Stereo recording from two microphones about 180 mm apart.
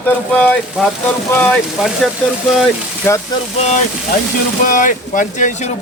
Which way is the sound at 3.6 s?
40° left (ahead or behind).